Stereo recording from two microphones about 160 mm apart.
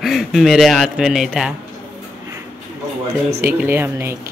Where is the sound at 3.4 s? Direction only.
15° right (ahead or behind).